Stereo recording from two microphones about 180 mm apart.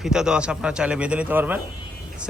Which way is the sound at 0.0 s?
5° right (ahead or behind).